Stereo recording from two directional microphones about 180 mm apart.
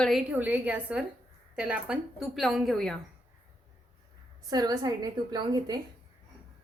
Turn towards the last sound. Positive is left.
turn(degrees=-25)  # may be behind; listen again after turning